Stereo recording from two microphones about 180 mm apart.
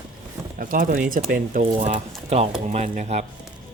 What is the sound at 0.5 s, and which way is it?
Speech, 50° right (ahead or behind).